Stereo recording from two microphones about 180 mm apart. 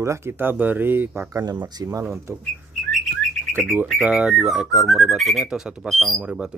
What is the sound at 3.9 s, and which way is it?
Speech, 5° right (ahead or behind).